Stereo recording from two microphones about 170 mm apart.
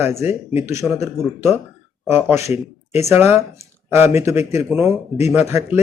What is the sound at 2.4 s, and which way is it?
Speech, 40° left (ahead or behind).